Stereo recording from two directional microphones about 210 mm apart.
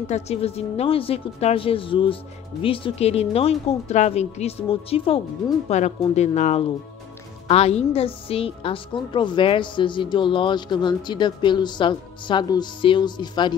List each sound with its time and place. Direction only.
0.0 s a woman's voice: 30° left (ahead or behind)